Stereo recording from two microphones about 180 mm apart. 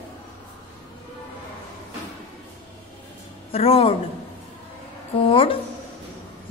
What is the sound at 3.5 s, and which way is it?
Speech, 35° left (ahead or behind).